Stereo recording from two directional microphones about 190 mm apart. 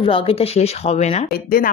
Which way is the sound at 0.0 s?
30° left (ahead or behind).